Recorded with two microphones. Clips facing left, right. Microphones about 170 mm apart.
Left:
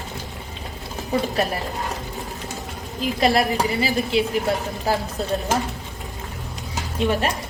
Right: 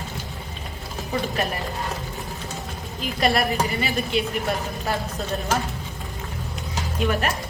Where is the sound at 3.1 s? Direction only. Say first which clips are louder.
Left 2 dB; 25° left (ahead or behind).